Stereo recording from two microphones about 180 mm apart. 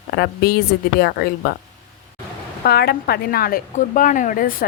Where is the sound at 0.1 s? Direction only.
55° left (ahead or behind).